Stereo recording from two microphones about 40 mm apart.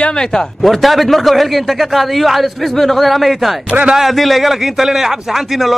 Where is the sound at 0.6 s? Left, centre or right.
Centre.